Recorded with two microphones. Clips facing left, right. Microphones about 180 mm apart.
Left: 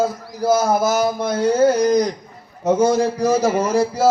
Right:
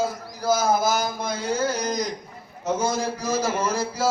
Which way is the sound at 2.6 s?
65° left (ahead or behind).